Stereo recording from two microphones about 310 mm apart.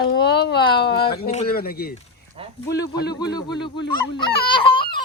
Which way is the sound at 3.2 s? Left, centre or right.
Centre.